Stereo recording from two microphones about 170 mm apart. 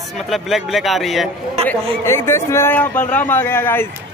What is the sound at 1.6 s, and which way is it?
A man's voice, 15° left (ahead or behind).